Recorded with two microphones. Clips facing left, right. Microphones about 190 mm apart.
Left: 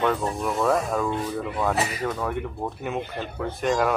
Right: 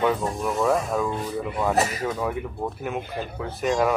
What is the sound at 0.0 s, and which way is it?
Speech, centre (ahead or behind).